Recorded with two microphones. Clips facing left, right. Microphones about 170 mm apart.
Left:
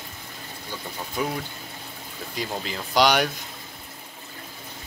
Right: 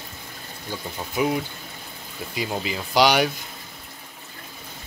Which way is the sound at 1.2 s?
10° right (ahead or behind).